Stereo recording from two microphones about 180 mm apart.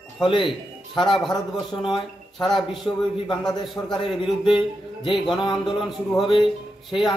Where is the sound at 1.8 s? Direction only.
25° left (ahead or behind).